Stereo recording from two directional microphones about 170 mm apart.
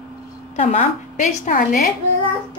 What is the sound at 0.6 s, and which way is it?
A woman's voice, 35° left (ahead or behind).